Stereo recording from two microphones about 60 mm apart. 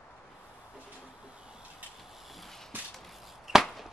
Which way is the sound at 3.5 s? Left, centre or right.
Centre.